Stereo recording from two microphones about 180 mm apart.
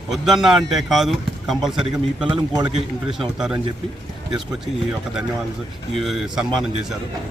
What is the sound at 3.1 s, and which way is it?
Speech, centre (ahead or behind).